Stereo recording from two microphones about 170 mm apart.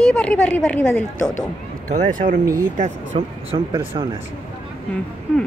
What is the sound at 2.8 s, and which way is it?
Speech, 40° right (ahead or behind).